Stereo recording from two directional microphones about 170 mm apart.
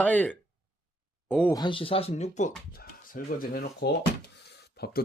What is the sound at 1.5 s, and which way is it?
Speech, 30° left (ahead or behind).